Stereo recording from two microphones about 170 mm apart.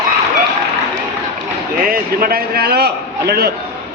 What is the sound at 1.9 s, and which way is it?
A man's voice, 60° right (ahead or behind).